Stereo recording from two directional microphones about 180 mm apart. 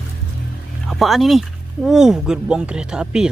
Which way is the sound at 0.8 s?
Centre (ahead or behind).